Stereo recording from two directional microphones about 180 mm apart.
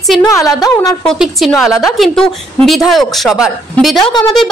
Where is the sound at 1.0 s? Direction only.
Centre (ahead or behind).